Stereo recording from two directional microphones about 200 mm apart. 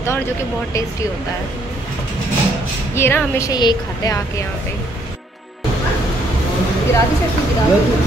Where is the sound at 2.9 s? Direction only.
10° left (ahead or behind).